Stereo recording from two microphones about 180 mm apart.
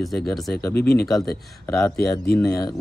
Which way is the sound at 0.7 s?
65° left (ahead or behind).